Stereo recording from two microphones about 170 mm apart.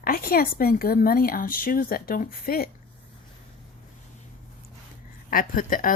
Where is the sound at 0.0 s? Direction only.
60° left (ahead or behind).